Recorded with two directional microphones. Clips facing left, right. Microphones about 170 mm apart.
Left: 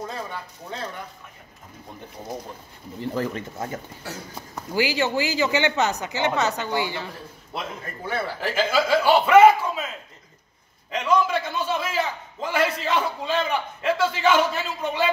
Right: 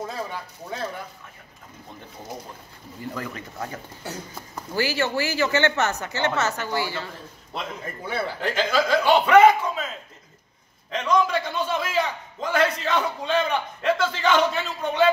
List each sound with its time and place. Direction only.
3.0 s speech: 30° left (ahead or behind)
8.4 s a man's voice: 5° left (ahead or behind)
10.9 s a man's voice: 5° left (ahead or behind)